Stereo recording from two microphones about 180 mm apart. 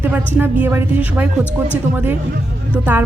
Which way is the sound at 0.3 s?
10° right (ahead or behind).